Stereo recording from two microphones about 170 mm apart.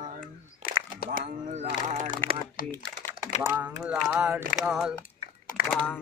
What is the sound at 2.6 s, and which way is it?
Speech, 60° left (ahead or behind).